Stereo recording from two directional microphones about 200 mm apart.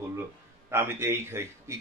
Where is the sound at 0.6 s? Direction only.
10° right (ahead or behind).